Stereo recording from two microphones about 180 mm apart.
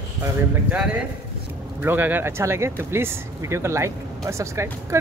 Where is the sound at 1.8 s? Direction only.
10° right (ahead or behind).